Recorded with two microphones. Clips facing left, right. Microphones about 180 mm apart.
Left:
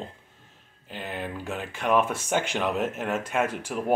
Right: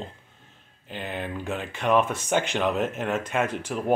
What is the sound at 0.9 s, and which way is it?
Speech, 5° left (ahead or behind).